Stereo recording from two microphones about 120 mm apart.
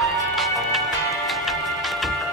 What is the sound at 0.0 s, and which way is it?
Music, centre (ahead or behind).